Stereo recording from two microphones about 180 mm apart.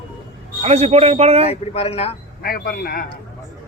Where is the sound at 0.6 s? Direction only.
35° right (ahead or behind).